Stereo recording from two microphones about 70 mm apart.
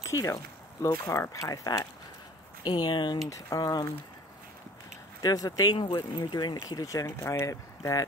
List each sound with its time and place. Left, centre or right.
0.0 s speech: left
2.6 s speech: left
3.3 s speech: left
5.2 s speech: left
6.7 s speech: left
7.1 s speech: left